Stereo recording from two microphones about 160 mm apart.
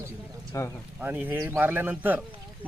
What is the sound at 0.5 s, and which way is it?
Speech, 20° left (ahead or behind).